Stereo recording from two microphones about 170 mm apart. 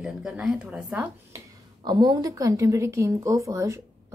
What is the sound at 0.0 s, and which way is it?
Speech, 5° right (ahead or behind).